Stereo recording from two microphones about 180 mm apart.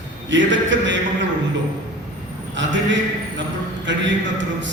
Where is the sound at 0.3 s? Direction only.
90° right.